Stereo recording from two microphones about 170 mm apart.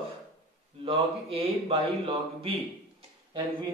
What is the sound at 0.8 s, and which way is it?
Speech, 35° right (ahead or behind).